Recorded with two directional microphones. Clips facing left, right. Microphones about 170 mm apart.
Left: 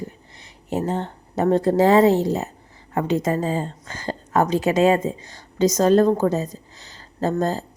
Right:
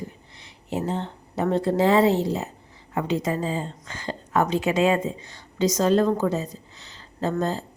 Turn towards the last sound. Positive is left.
turn(degrees=40)  # may be behind; listen again after turning